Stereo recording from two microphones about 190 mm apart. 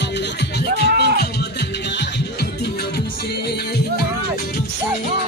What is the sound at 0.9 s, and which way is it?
Music, 65° right (ahead or behind).